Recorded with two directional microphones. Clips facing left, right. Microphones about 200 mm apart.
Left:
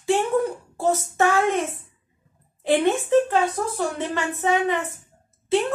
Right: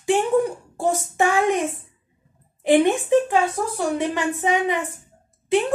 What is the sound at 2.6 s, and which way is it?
A woman's voice, 15° right (ahead or behind).